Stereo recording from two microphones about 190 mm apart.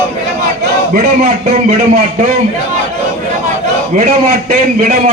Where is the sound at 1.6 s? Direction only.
40° right (ahead or behind).